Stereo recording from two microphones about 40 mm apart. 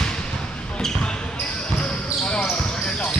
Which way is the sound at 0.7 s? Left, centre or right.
Centre.